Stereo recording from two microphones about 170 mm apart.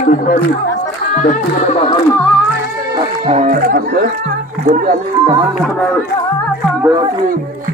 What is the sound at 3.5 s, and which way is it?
Speech, 55° right (ahead or behind).